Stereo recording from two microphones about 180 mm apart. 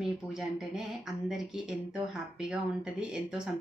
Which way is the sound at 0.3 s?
5° right (ahead or behind).